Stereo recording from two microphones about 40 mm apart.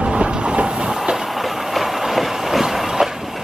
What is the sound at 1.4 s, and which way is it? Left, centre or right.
Train, centre.